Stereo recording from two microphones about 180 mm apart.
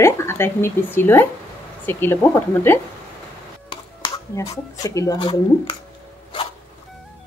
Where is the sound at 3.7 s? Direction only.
25° left (ahead or behind).